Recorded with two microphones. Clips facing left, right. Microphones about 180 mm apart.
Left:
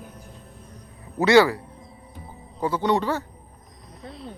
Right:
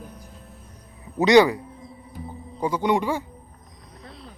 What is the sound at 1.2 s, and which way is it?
Speech, 20° right (ahead or behind).